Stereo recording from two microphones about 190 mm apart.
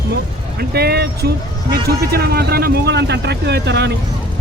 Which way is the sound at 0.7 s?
60° right (ahead or behind).